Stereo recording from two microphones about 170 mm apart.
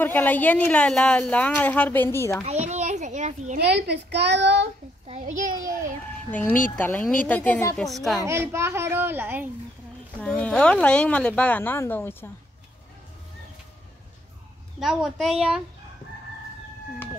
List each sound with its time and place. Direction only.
0.0 s a woman's voice: 10° left (ahead or behind)
2.4 s children playing: 40° right (ahead or behind)
3.5 s a child's voice: 75° right (ahead or behind)
6.3 s a woman's voice: 10° left (ahead or behind)
8.2 s a child's voice: 15° right (ahead or behind)
10.2 s a woman's voice: 5° left (ahead or behind)
14.8 s a child's voice: centre (ahead or behind)